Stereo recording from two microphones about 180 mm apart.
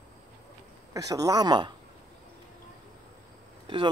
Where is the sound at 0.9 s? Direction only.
20° right (ahead or behind).